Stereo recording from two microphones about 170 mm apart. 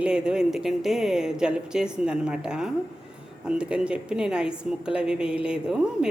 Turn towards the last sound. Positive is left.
turn(degrees=-5)  # may be behind; listen again after turning